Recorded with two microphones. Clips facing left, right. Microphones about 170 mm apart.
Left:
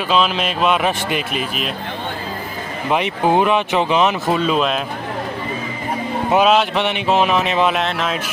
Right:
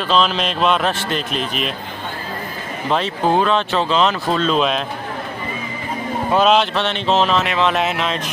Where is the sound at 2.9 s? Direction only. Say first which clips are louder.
Left 1 dB; 15° left (ahead or behind).